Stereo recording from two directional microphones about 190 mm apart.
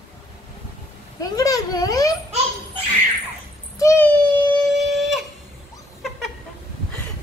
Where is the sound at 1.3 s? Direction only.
20° left (ahead or behind).